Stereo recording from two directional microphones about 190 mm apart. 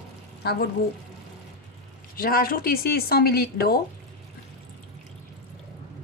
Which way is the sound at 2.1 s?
50° left (ahead or behind).